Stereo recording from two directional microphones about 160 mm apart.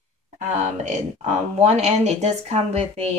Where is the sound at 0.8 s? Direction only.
45° right (ahead or behind).